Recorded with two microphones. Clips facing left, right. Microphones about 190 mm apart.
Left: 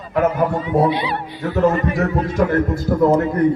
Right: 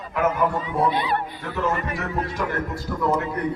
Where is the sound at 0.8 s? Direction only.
50° right (ahead or behind).